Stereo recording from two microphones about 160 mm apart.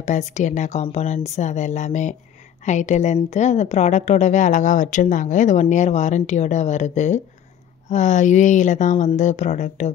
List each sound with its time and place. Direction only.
0.0 s speech: 50° left (ahead or behind)